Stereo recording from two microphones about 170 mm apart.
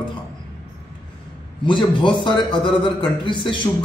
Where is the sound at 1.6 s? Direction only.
30° left (ahead or behind).